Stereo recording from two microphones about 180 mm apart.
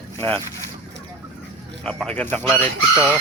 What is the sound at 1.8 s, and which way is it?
Speech, 5° left (ahead or behind).